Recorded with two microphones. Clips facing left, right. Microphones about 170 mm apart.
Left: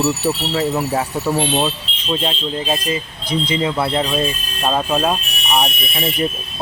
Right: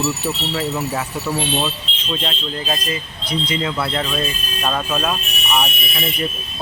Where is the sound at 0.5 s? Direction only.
35° left (ahead or behind).